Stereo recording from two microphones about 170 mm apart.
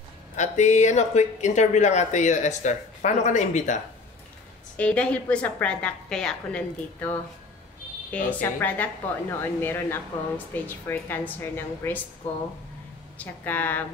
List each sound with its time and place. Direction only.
0.4 s speech: 45° left (ahead or behind)
4.7 s a woman's voice: 5° left (ahead or behind)
13.2 s a woman's voice: 10° left (ahead or behind)